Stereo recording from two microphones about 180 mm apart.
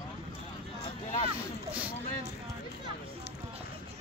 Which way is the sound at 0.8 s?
40° left (ahead or behind).